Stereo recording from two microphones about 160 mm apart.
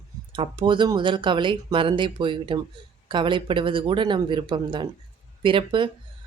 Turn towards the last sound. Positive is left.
turn(degrees=-30)  # may be behind; listen again after turning